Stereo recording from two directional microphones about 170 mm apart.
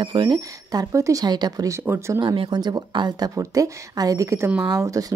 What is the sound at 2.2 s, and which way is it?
Speech, 25° right (ahead or behind).